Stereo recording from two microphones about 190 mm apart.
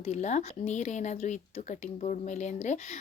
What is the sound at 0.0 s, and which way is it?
Speech, 40° left (ahead or behind).